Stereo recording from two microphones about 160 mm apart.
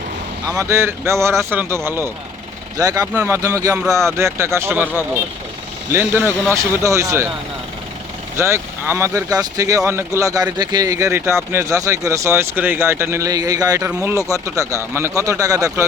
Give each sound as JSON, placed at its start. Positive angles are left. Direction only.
{"t": 0.4, "sound": "speech", "side_deg": -20}
{"t": 5.9, "sound": "speech", "side_deg": -15}
{"t": 8.4, "sound": "speech", "side_deg": -15}